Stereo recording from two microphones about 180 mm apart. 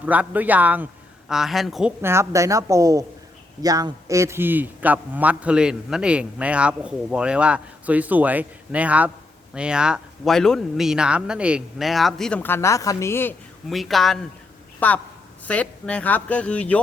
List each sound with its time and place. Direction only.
0.0 s a man's voice: 10° right (ahead or behind)
2.0 s a man's voice: 15° right (ahead or behind); by 13.3 s 15° left (ahead or behind)
13.7 s speech: centre (ahead or behind)